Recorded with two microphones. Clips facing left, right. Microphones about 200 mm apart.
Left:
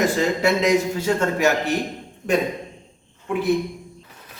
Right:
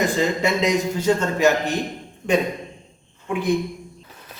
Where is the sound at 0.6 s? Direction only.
10° left (ahead or behind).